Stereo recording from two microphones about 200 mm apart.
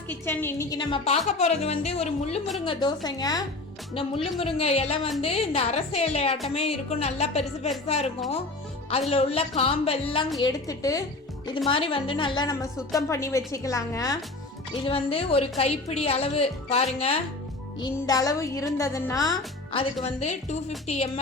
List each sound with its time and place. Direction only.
0.1 s a woman's voice: 10° left (ahead or behind); by 10.2 s 30° left (ahead or behind)
10.4 s a woman's voice: 15° left (ahead or behind)
14.8 s a woman's voice: 30° left (ahead or behind)
18.0 s a woman's voice: 15° left (ahead or behind); by 21.1 s 35° left (ahead or behind)